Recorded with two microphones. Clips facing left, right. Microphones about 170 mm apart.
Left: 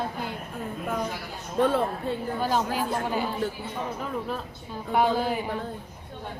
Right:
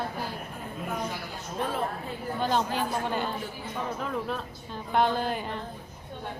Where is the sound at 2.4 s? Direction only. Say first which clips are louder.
Right 1 dB; 10° left (ahead or behind).